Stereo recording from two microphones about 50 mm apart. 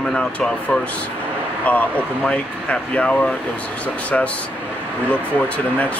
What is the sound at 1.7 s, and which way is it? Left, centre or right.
Speech, left.